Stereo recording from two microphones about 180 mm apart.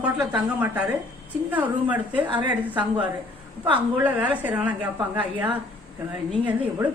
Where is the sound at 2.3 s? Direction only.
25° right (ahead or behind).